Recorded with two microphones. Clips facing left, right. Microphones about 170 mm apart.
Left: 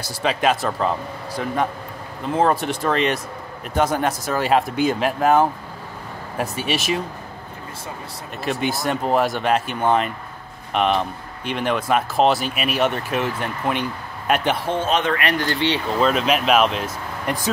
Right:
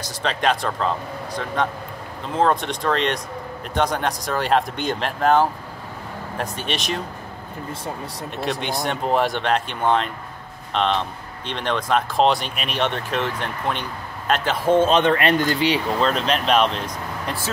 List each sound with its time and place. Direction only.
0.0 s speech: 10° left (ahead or behind)
8.4 s speech: 5° left (ahead or behind)
14.9 s speech: 30° right (ahead or behind)
15.4 s speech: 10° right (ahead or behind)
16.0 s speech: 5° left (ahead or behind)